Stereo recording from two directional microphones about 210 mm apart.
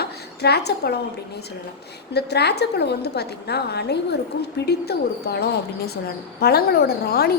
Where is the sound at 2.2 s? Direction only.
50° left (ahead or behind).